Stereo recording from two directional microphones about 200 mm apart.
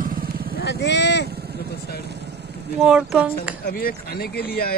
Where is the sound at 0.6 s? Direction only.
60° left (ahead or behind).